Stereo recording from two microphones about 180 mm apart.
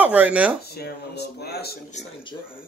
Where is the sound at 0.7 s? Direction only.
65° left (ahead or behind).